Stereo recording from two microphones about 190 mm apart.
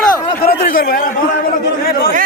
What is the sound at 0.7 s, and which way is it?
Speech, 50° left (ahead or behind).